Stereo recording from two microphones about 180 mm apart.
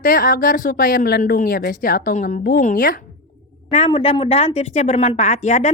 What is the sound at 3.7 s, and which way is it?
A woman's voice, 35° left (ahead or behind).